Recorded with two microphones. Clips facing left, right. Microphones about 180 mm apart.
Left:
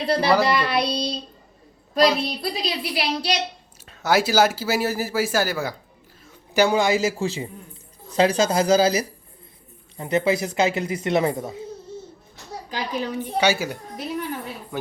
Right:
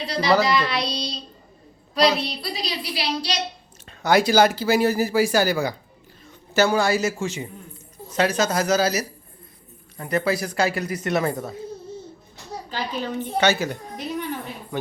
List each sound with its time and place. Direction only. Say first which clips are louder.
0.0 s a child's voice: left 1 dB; 55° left (ahead or behind)
2.2 s a woman's voice: left 3 dB; 50° left (ahead or behind)
3.8 s speech: right 2 dB; 5° left (ahead or behind)
6.5 s a woman's voice: left 1 dB; 15° left (ahead or behind)
7.2 s a man's voice: left 2 dB; 35° left (ahead or behind)
12.7 s a woman's voice: left 1 dB; 10° left (ahead or behind)